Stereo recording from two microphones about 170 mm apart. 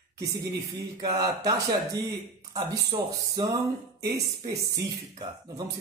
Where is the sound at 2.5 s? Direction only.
20° right (ahead or behind).